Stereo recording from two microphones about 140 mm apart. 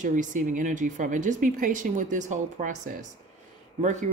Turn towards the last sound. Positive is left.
turn(degrees=-60)  # may be behind; listen again after turning